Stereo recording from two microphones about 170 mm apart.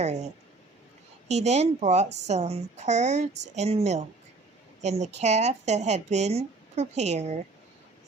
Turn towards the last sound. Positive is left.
turn(degrees=-40)  # may be behind; listen again after turning